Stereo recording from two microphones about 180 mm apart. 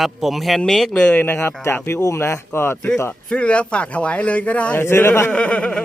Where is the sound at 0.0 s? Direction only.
Centre (ahead or behind).